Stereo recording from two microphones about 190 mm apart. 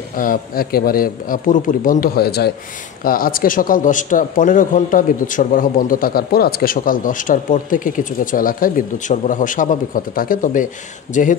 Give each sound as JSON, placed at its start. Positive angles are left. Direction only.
{"t": 0.1, "sound": "a man's voice", "side_deg": 45}